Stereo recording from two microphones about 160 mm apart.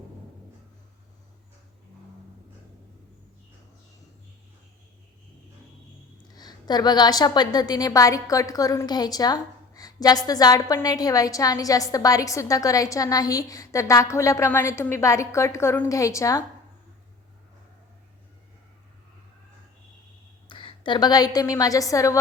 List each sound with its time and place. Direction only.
6.3 s a woman's voice: 25° left (ahead or behind)
20.5 s a woman's voice: 30° left (ahead or behind)